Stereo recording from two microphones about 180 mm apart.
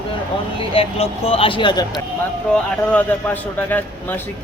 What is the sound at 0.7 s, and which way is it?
Speech, 30° left (ahead or behind).